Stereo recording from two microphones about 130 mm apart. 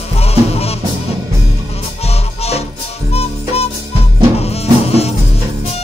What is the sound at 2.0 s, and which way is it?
Music, 50° left (ahead or behind).